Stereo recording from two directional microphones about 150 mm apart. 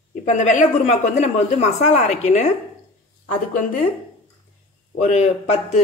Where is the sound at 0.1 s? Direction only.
55° left (ahead or behind).